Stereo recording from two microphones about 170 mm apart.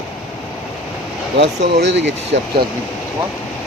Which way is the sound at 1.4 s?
90° right.